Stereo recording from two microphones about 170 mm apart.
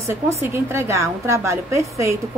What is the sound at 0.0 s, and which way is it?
A woman's voice, 15° right (ahead or behind).